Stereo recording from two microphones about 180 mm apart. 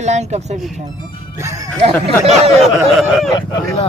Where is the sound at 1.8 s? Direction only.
35° right (ahead or behind).